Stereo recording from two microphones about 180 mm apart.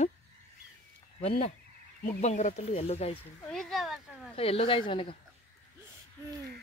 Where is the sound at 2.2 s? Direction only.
40° left (ahead or behind).